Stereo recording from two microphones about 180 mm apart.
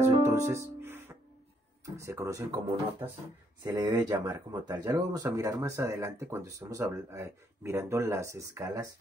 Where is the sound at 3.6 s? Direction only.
20° right (ahead or behind).